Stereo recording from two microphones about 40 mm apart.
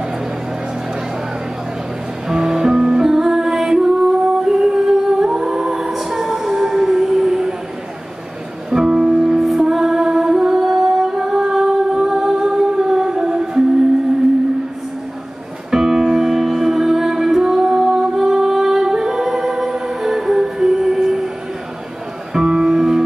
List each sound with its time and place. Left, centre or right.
2.2 s music: centre
4.5 s singing: centre
8.6 s music: centre
15.7 s music: centre
22.3 s music: right